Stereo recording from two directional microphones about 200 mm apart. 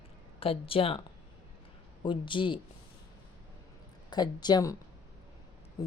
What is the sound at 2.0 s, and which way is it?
Speech, 25° left (ahead or behind).